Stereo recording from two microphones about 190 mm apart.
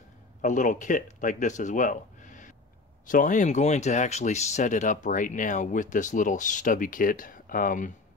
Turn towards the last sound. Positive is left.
turn(degrees=45)  # may be behind; listen again after turning